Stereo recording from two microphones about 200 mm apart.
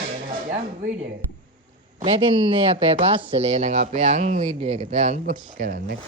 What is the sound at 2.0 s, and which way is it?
Speech, 30° right (ahead or behind).